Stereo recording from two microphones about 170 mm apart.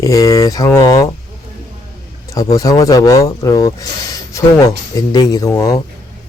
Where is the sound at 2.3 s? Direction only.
20° left (ahead or behind).